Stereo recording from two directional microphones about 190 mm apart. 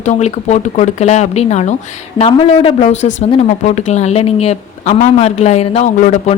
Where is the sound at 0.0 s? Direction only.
35° left (ahead or behind).